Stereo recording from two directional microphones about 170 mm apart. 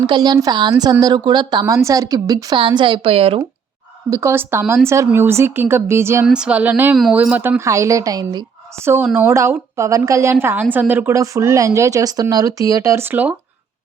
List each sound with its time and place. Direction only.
0.1 s speech: 25° right (ahead or behind)
4.1 s a woman's voice: 15° right (ahead or behind)
6.2 s a woman's voice: 5° right (ahead or behind); by 8.4 s 25° right (ahead or behind)
8.8 s a woman's voice: 15° right (ahead or behind)